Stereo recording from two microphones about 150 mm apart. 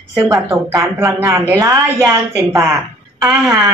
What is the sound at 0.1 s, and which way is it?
A woman's voice, 20° right (ahead or behind).